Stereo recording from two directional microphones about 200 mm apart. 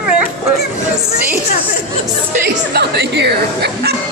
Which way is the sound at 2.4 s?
55° right (ahead or behind).